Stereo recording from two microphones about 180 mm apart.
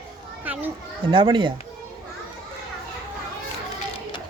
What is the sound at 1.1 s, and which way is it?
Speech, 30° right (ahead or behind).